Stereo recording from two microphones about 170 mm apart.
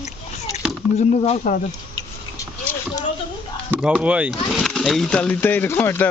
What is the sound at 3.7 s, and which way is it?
Speech, 5° right (ahead or behind).